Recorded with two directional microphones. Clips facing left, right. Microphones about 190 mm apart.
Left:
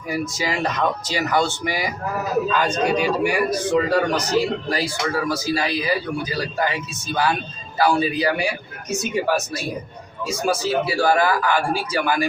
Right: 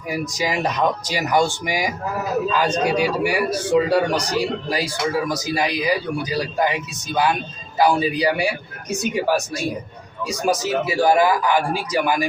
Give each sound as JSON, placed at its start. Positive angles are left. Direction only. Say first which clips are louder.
{"t": 0.1, "sound": "a man's voice", "louder": "right 1 dB", "side_deg": -15}
{"t": 10.2, "sound": "a man's voice", "louder": "right 1 dB", "side_deg": -20}